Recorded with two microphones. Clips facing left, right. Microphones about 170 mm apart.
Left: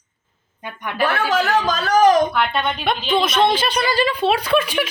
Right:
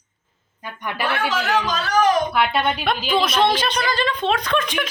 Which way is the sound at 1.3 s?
40° left (ahead or behind).